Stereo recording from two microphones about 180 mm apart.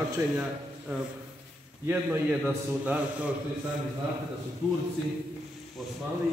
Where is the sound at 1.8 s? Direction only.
10° right (ahead or behind).